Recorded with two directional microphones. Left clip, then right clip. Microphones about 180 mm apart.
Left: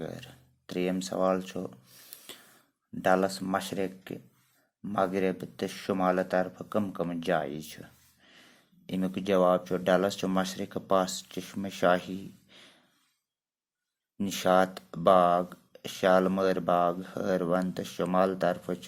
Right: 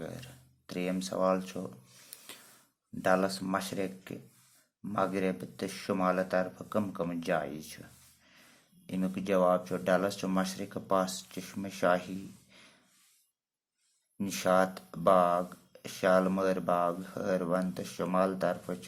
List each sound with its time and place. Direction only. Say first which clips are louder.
0.0 s a sound: left 3 dB; 30° left (ahead or behind)
3.0 s speech: left 3 dB; 30° left (ahead or behind)
14.2 s speech: left 3 dB; 30° left (ahead or behind)